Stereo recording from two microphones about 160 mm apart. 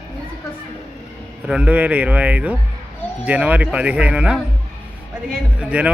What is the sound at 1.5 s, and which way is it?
Speech, 5° right (ahead or behind).